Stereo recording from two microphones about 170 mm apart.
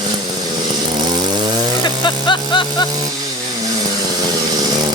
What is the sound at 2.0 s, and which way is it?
Music, 30° left (ahead or behind).